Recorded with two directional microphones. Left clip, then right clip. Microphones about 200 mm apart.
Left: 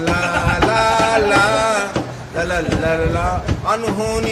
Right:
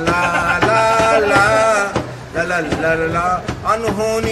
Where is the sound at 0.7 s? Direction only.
5° left (ahead or behind).